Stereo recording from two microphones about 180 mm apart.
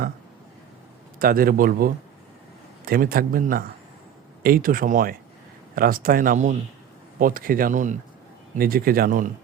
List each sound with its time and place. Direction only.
1.2 s speech: 55° right (ahead or behind)